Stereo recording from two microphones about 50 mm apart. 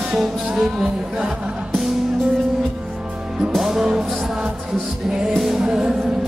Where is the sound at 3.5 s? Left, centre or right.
Centre.